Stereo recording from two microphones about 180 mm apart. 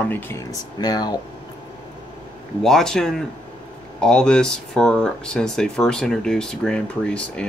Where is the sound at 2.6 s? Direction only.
Centre (ahead or behind).